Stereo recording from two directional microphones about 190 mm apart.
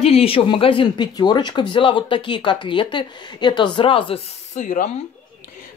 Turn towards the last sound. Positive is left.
turn(degrees=40)  # may be behind; listen again after turning